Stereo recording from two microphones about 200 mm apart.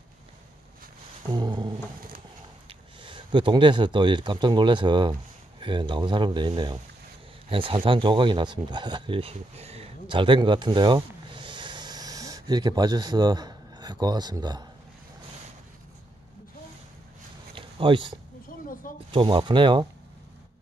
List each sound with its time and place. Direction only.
1.3 s speech: 25° right (ahead or behind)
3.0 s speech: 25° right (ahead or behind)
17.6 s a sound: 25° right (ahead or behind)
18.7 s mechanisms: 40° left (ahead or behind)
19.1 s speech: 25° right (ahead or behind)